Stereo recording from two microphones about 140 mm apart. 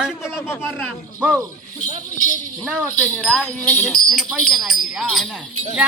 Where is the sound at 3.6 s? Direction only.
10° left (ahead or behind).